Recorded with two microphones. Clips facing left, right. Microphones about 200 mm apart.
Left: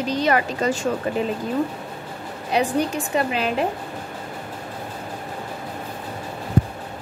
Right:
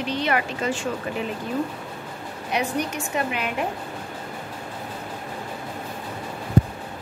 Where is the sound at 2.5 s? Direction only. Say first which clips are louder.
Left 5 dB; 30° left (ahead or behind).